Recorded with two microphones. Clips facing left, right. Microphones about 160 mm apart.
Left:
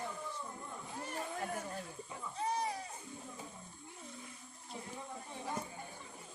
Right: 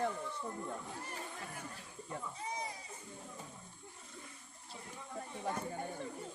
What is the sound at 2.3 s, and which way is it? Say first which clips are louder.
Baby cry: left 6 dB; 65° left (ahead or behind).